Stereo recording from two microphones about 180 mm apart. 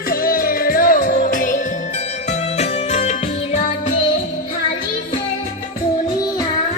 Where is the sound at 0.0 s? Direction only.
55° left (ahead or behind); by 3.8 s 35° left (ahead or behind).